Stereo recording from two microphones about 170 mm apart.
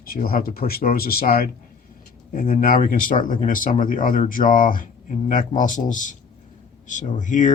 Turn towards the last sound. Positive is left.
turn(degrees=45)  # may be behind; listen again after turning